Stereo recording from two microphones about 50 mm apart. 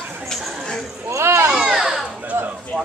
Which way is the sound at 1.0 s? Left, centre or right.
Right.